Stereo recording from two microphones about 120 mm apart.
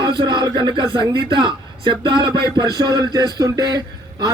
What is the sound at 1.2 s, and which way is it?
A man's voice, 40° right (ahead or behind).